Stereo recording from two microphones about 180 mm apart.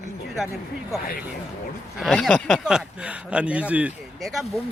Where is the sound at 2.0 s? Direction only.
Centre (ahead or behind).